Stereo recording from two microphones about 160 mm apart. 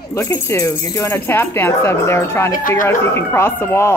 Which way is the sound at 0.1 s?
15° left (ahead or behind).